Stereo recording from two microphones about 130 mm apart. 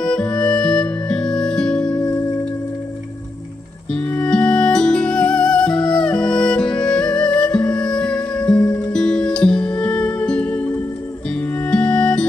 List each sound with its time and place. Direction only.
0.0 s music: 5° left (ahead or behind)
3.9 s music: 10° left (ahead or behind)